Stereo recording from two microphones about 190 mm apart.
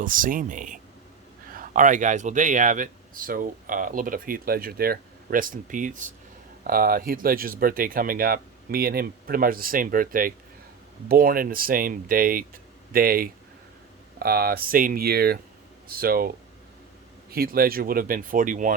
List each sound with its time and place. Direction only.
0.0 s speech: 45° right (ahead or behind)
17.3 s speech: 50° right (ahead or behind)